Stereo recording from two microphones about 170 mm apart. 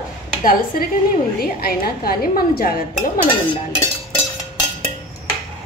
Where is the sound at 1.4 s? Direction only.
60° left (ahead or behind).